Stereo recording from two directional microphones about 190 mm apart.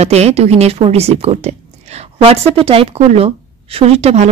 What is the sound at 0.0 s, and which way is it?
A woman's voice, 35° right (ahead or behind).